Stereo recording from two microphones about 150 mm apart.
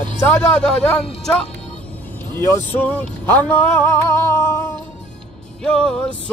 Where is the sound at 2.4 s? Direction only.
15° left (ahead or behind).